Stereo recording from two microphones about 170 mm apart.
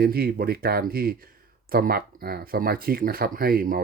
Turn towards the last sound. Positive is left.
turn(degrees=-60)  # may be behind; listen again after turning